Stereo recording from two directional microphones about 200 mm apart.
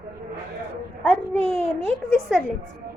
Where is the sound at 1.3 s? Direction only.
30° right (ahead or behind).